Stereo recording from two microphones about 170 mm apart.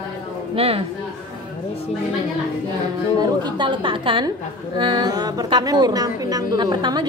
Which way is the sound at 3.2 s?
25° right (ahead or behind).